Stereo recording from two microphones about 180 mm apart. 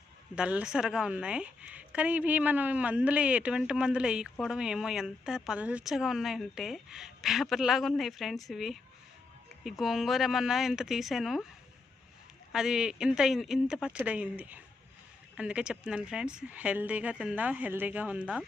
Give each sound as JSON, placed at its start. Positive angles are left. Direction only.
{"t": 0.3, "sound": "a woman's voice", "side_deg": -5}
{"t": 12.5, "sound": "a woman's voice", "side_deg": -5}